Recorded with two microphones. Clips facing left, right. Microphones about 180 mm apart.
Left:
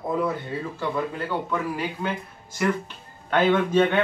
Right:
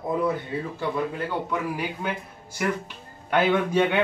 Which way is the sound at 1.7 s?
10° right (ahead or behind).